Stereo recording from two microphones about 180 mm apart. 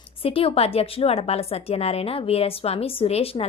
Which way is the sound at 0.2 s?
30° left (ahead or behind).